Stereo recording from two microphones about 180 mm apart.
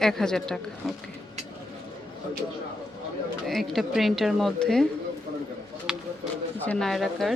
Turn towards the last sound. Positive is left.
turn(degrees=0)  # may be behind; listen again after turning